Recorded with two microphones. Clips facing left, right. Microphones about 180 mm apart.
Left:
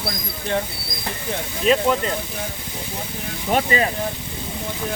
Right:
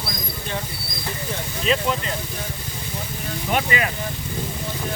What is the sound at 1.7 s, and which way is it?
Speech, 50° left (ahead or behind).